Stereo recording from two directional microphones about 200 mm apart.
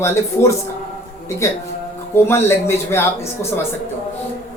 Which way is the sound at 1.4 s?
15° left (ahead or behind).